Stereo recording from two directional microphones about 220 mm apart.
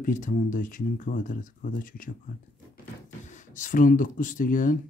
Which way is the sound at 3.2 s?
35° left (ahead or behind).